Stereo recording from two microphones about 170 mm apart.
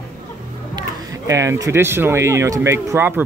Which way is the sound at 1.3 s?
20° right (ahead or behind).